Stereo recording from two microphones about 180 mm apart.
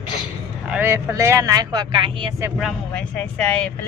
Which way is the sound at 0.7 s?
10° right (ahead or behind).